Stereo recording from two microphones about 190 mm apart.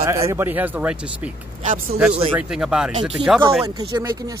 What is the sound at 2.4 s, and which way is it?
Speech, 5° right (ahead or behind).